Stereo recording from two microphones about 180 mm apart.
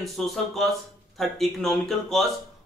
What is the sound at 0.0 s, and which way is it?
Speech, centre (ahead or behind).